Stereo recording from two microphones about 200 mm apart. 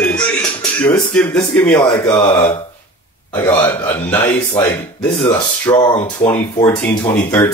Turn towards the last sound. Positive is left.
turn(degrees=15)  # may be behind; listen again after turning